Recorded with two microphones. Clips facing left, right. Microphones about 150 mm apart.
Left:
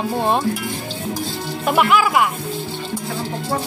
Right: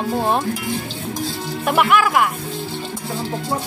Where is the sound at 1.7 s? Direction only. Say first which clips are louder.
Even; centre (ahead or behind).